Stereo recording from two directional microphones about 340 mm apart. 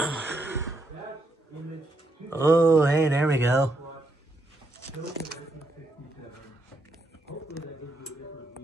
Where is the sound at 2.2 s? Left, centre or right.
Centre.